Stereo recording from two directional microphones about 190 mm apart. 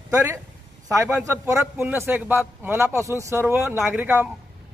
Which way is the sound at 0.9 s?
15° right (ahead or behind).